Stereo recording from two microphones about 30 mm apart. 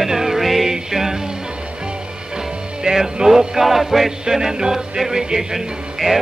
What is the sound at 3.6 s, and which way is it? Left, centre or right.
Music, centre.